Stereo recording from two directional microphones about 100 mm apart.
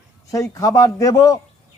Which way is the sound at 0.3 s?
35° left (ahead or behind).